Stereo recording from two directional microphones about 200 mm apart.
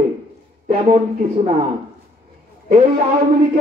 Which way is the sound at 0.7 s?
35° right (ahead or behind).